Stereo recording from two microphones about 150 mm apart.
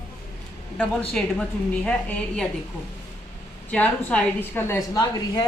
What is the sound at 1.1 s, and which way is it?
Speech, 5° left (ahead or behind).